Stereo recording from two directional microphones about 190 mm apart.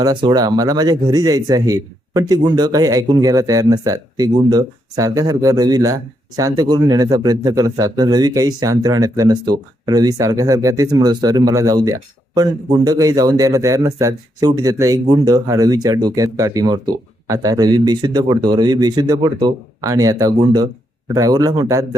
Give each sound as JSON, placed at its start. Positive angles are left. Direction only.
{"t": 0.0, "sound": "speech", "side_deg": -25}